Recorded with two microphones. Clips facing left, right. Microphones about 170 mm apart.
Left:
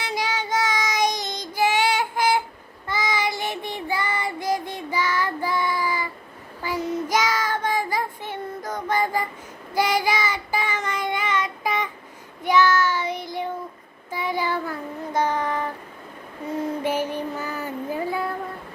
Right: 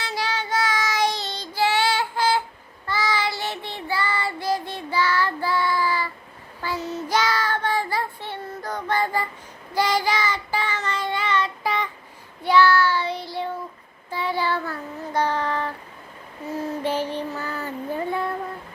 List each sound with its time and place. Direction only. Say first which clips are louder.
0.0 s child singing: left 1 dB; 15° left (ahead or behind)
16.8 s child singing: even; 10° left (ahead or behind)